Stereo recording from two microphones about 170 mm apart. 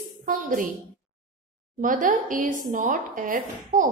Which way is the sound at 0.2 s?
50° right (ahead or behind).